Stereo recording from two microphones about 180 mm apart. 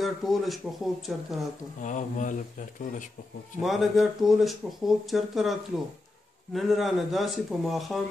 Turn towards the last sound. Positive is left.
turn(degrees=0)  # may be behind; listen again after turning